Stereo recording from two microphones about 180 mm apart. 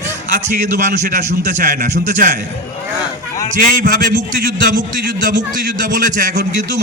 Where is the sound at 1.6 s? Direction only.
45° right (ahead or behind).